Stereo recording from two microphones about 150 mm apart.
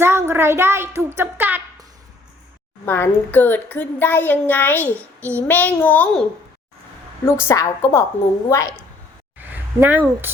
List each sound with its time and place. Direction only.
0.0 s speech: 15° right (ahead or behind)
2.8 s a child's voice: 15° left (ahead or behind)
7.3 s a woman's voice: 15° left (ahead or behind)
9.4 s speech: 10° right (ahead or behind)